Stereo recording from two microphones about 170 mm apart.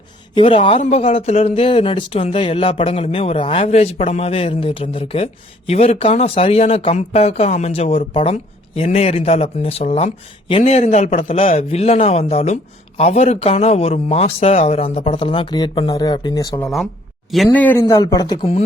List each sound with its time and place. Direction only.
0.3 s a man's voice: 30° left (ahead or behind)
0.8 s speech: 40° left (ahead or behind); by 16.6 s 20° left (ahead or behind)
16.6 s speech: centre (ahead or behind); by 18.3 s 20° left (ahead or behind)